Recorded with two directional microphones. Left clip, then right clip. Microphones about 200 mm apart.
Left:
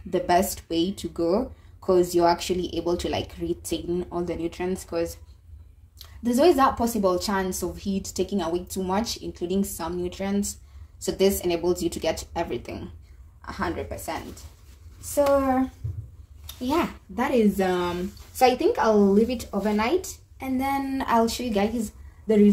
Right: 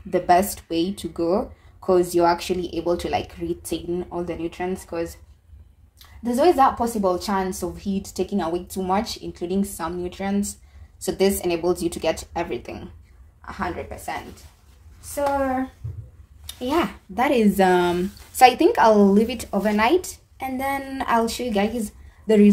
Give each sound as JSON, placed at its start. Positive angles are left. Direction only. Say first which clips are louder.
{"t": 0.1, "sound": "a woman's voice", "louder": "right 4 dB", "side_deg": 0}
{"t": 16.4, "sound": "speech", "louder": "right 3 dB", "side_deg": -10}
{"t": 17.1, "sound": "a woman's voice", "louder": "right 3 dB", "side_deg": -30}
{"t": 22.2, "sound": "speech", "louder": "right 3 dB", "side_deg": -25}